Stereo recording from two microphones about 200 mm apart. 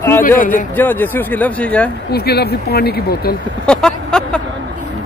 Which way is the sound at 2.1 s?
50° left (ahead or behind).